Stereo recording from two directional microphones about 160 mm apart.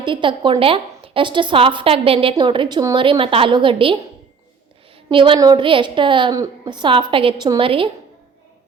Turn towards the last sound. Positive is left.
turn(degrees=-35)  # may be behind; listen again after turning